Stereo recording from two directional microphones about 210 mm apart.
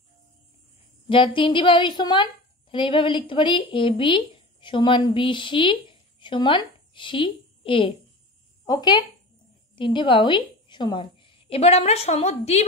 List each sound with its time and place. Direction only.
1.0 s a woman's voice: 25° left (ahead or behind)